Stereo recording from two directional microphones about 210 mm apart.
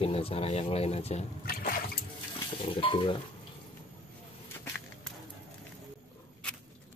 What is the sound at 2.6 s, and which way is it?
Speech, 25° left (ahead or behind).